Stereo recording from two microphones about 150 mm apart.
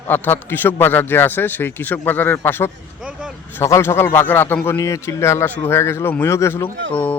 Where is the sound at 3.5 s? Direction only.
20° left (ahead or behind).